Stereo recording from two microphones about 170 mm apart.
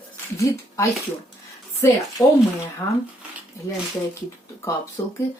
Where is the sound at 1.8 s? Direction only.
15° left (ahead or behind).